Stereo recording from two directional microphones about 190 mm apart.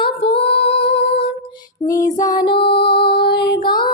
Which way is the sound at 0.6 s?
30° left (ahead or behind).